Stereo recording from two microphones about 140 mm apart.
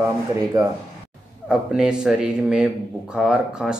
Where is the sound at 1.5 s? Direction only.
5° right (ahead or behind).